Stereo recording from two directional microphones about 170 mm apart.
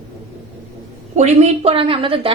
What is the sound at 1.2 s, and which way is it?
A woman's voice, 40° right (ahead or behind).